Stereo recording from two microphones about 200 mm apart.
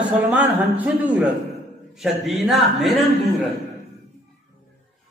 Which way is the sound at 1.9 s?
Centre (ahead or behind).